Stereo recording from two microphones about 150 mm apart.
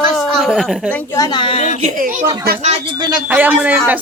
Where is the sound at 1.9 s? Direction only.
65° right (ahead or behind).